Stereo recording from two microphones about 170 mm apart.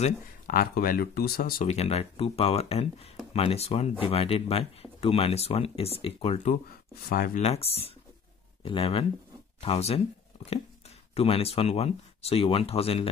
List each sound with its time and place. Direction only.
0.5 s speech: 55° left (ahead or behind)
1.7 s speech: 40° left (ahead or behind)
7.1 s speech: 55° left (ahead or behind)
7.4 s speech: 35° left (ahead or behind)
11.1 s speech: 35° left (ahead or behind)